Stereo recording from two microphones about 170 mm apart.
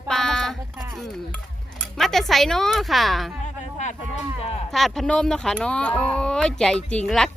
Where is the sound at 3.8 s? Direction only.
45° left (ahead or behind).